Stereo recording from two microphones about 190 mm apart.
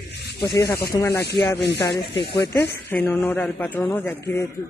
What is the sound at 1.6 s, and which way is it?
Speech, 65° left (ahead or behind).